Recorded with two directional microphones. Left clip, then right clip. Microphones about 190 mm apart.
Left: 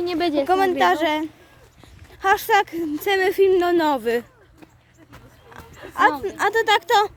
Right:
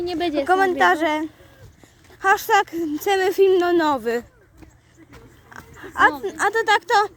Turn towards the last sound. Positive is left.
turn(degrees=-5)  # may be behind; listen again after turning